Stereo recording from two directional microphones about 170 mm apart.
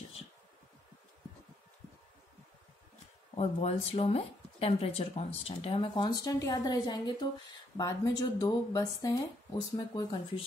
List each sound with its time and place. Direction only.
3.3 s speech: 35° left (ahead or behind); by 9.2 s 20° left (ahead or behind)
9.9 s speech: 30° left (ahead or behind)